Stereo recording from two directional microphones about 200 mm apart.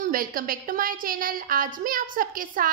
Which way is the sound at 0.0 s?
45° right (ahead or behind).